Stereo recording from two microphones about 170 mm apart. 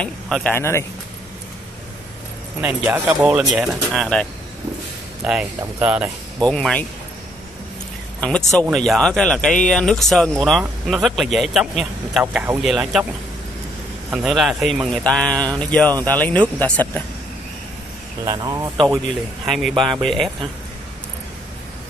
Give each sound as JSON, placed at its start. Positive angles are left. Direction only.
{"t": 0.0, "sound": "speech", "side_deg": 5}
{"t": 2.6, "sound": "speech", "side_deg": -10}
{"t": 6.4, "sound": "speech", "side_deg": 5}
{"t": 8.2, "sound": "speech", "side_deg": 5}
{"t": 14.1, "sound": "speech", "side_deg": 0}
{"t": 18.2, "sound": "speech", "side_deg": -20}
{"t": 19.4, "sound": "speech", "side_deg": 0}